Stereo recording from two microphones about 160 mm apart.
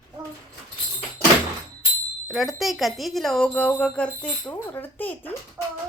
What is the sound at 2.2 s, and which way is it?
Speech, centre (ahead or behind).